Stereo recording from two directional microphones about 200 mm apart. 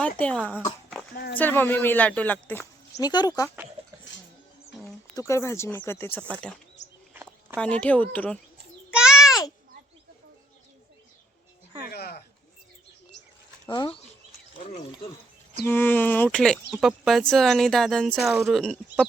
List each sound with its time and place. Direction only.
0.2 s speech: 5° left (ahead or behind)
1.1 s speech: 50° left (ahead or behind)
1.4 s speech: 10° left (ahead or behind)
3.0 s speech: 20° left (ahead or behind)
5.1 s speech: 15° left (ahead or behind)
7.6 s speech: 5° left (ahead or behind)
8.9 s a sound: 5° right (ahead or behind)
11.9 s a sound: 50° left (ahead or behind)
13.7 s speech: 20° left (ahead or behind)
15.6 s speech: 10° left (ahead or behind)